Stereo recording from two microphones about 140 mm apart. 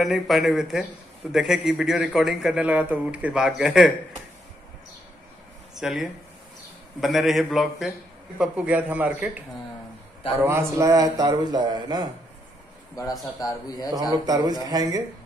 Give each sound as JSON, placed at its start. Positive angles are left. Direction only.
{"t": 0.0, "sound": "a man's voice", "side_deg": 0}
{"t": 5.8, "sound": "a man's voice", "side_deg": -5}
{"t": 10.4, "sound": "a man's voice", "side_deg": -20}
{"t": 13.4, "sound": "a man's voice", "side_deg": 25}
{"t": 14.1, "sound": "a man's voice", "side_deg": -30}